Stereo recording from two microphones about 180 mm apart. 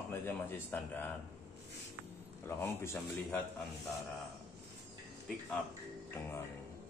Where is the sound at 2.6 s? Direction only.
10° left (ahead or behind).